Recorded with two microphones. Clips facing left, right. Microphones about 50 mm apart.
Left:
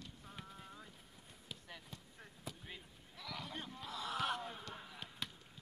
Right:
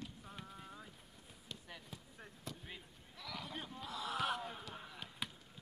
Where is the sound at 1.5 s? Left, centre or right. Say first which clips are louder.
Right 1 dB; centre.